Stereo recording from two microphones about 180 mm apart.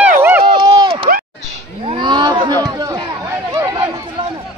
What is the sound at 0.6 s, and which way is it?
Run, 25° right (ahead or behind).